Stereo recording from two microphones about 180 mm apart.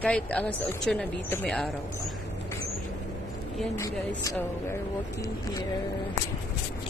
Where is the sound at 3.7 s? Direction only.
15° left (ahead or behind).